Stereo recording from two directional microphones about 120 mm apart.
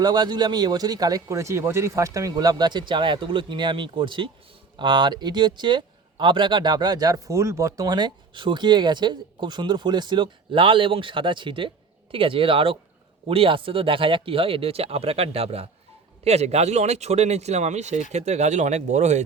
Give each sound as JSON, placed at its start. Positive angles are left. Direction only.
{"t": 0.0, "sound": "speech", "side_deg": -35}